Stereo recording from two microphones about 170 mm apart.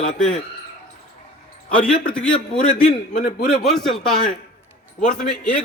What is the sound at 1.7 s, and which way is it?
Speech, 5° left (ahead or behind).